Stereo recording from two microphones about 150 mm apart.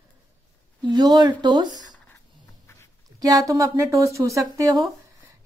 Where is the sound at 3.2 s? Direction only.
25° right (ahead or behind).